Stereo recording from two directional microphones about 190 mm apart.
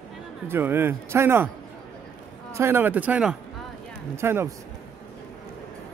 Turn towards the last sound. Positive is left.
turn(degrees=-15)  # may be behind; listen again after turning